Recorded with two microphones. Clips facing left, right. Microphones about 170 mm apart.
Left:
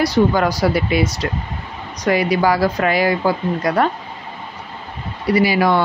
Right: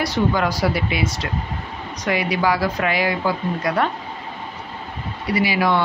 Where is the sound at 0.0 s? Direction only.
40° left (ahead or behind).